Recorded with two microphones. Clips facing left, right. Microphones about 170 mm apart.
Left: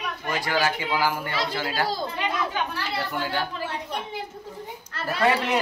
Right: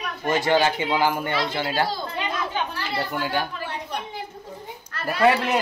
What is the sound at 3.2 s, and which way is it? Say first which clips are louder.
Speech: right 2 dB; 15° right (ahead or behind).